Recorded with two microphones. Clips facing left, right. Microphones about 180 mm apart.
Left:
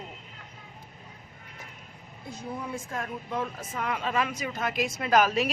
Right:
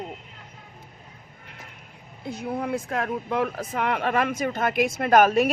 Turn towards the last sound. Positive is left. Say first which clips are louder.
# right 6 dB
turn(degrees=-55)  # may be behind; listen again after turning